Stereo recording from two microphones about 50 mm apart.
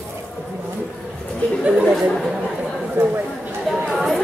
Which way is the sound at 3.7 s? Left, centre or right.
Centre.